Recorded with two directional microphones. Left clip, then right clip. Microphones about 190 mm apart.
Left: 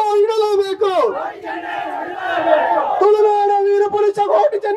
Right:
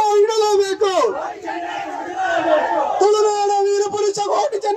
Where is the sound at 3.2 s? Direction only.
55° right (ahead or behind).